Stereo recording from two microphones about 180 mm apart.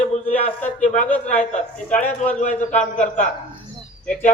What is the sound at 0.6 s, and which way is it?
Speech, 10° left (ahead or behind).